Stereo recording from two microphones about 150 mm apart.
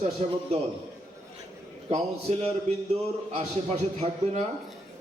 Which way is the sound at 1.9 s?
45° right (ahead or behind).